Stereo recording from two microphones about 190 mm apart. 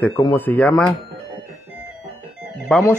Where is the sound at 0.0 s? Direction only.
10° left (ahead or behind).